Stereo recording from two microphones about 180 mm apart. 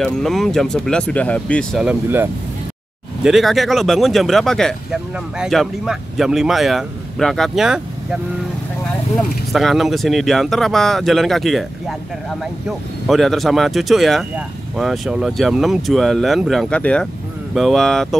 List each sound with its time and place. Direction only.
0.0 s speech: centre (ahead or behind)
3.3 s speech: centre (ahead or behind)
12.6 s speech: centre (ahead or behind)